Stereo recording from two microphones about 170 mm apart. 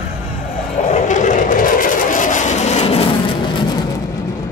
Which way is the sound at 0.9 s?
45° left (ahead or behind).